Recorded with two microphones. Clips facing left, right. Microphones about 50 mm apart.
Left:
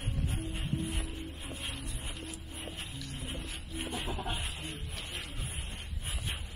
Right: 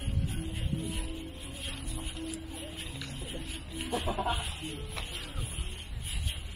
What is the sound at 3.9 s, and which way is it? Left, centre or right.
Speech, right.